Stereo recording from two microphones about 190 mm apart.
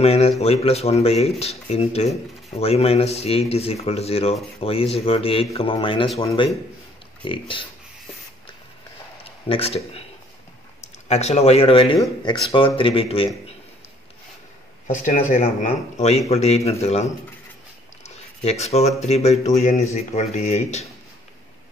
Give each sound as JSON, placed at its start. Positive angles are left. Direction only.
{"t": 0.0, "sound": "speech", "side_deg": 30}
{"t": 9.2, "sound": "a sound", "side_deg": 30}
{"t": 11.1, "sound": "speech", "side_deg": 35}
{"t": 14.9, "sound": "speech", "side_deg": 45}